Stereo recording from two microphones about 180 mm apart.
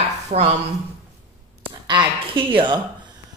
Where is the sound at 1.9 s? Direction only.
25° right (ahead or behind).